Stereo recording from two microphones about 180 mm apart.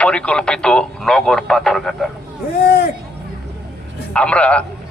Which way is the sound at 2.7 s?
60° left (ahead or behind).